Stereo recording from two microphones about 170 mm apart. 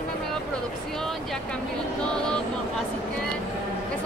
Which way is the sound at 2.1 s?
5° left (ahead or behind).